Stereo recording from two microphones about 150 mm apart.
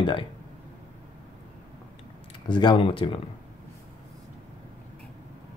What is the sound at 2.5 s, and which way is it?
Speech, 30° left (ahead or behind).